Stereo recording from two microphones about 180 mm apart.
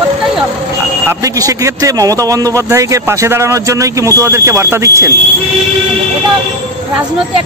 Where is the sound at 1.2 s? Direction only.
20° right (ahead or behind).